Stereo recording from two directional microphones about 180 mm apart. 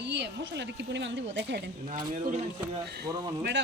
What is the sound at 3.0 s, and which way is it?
Speech, 20° right (ahead or behind).